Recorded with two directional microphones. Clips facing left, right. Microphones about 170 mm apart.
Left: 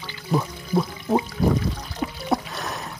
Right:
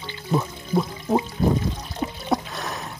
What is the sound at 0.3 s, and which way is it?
Speech, centre (ahead or behind).